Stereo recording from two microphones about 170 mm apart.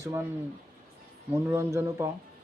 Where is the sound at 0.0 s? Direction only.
15° right (ahead or behind).